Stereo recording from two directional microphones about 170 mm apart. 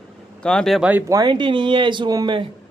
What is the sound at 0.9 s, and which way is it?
Speech, 20° right (ahead or behind).